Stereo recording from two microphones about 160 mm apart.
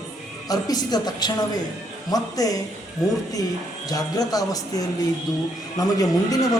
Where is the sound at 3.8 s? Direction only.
25° left (ahead or behind).